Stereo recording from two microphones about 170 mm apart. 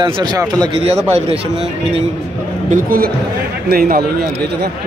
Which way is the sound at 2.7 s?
60° right (ahead or behind).